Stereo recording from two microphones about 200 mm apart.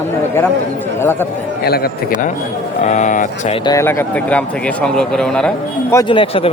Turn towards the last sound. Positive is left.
turn(degrees=25)  # may be behind; listen again after turning